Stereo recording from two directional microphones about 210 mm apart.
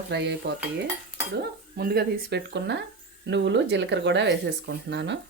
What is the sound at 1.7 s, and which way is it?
Speech, 45° right (ahead or behind).